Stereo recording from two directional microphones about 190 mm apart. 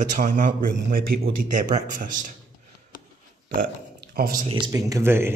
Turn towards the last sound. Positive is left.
turn(degrees=-10)  # may be behind; listen again after turning